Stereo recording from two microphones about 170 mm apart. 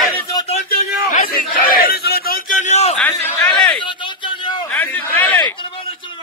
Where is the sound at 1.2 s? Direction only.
60° left (ahead or behind); by 2.9 s 40° left (ahead or behind).